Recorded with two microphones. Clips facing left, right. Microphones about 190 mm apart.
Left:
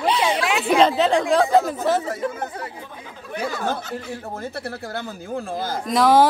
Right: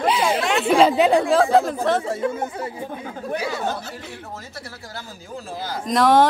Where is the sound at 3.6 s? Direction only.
55° left (ahead or behind).